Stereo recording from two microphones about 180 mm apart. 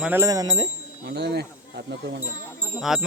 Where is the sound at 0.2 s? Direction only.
20° right (ahead or behind).